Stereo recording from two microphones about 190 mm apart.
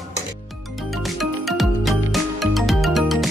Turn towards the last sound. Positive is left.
turn(degrees=0)  # may be behind; listen again after turning